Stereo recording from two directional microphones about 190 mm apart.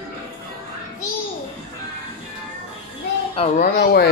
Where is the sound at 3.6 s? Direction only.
55° left (ahead or behind).